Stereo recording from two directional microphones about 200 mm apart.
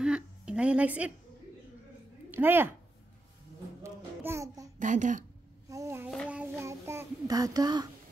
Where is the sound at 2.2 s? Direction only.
10° right (ahead or behind).